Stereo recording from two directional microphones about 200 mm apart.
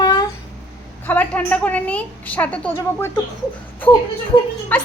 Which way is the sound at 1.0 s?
10° left (ahead or behind).